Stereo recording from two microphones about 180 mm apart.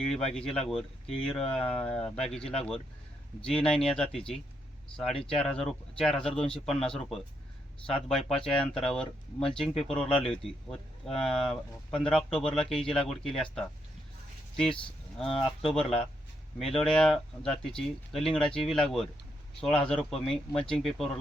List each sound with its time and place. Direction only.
0.5 s speech: 5° left (ahead or behind)
3.7 s speech: 5° left (ahead or behind)
5.4 s speech: 5° left (ahead or behind)
10.1 s speech: 30° left (ahead or behind)
10.3 s speech: 5° left (ahead or behind)
15.2 s speech: 30° left (ahead or behind)
15.6 s speech: 5° left (ahead or behind)